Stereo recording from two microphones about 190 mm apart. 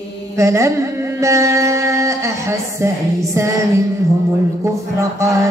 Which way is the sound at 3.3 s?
15° right (ahead or behind).